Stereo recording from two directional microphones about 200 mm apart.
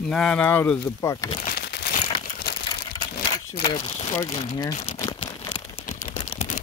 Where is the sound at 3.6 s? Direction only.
20° left (ahead or behind).